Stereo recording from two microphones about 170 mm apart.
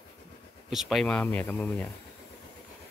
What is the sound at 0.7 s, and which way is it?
Speech, centre (ahead or behind).